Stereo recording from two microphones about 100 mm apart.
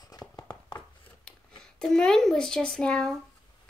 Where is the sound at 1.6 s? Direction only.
5° left (ahead or behind).